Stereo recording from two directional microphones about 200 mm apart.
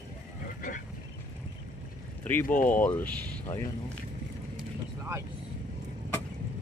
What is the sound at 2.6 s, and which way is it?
Speech, 10° left (ahead or behind).